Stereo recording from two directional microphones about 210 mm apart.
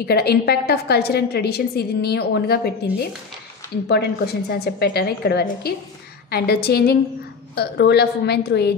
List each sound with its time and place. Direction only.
0.0 s a woman's voice: 50° left (ahead or behind)